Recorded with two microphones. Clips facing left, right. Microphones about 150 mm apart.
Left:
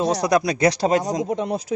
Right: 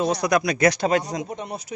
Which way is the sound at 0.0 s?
35° left (ahead or behind).